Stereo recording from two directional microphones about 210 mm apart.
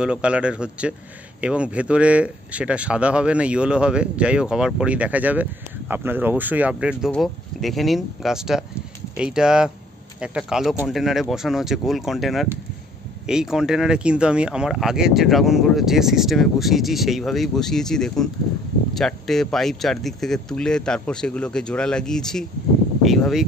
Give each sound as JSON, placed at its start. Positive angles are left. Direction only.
{"t": 0.0, "sound": "speech", "side_deg": -5}